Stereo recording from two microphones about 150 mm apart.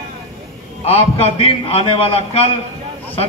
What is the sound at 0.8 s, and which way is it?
A man's voice, 40° left (ahead or behind).